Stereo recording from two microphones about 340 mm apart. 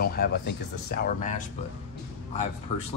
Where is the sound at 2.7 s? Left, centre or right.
Centre.